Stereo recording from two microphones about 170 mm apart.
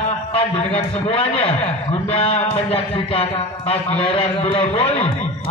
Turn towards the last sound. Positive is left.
turn(degrees=35)  # may be behind; listen again after turning